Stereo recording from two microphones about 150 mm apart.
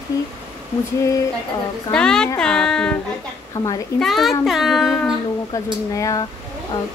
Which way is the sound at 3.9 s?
Centre (ahead or behind).